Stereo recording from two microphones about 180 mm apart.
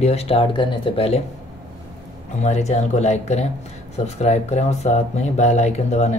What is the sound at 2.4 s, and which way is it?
Speech, 40° left (ahead or behind).